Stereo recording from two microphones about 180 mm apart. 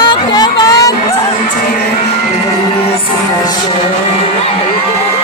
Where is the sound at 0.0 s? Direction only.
25° left (ahead or behind).